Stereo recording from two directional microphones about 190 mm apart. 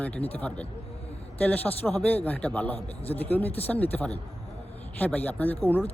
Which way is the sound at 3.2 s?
10° left (ahead or behind).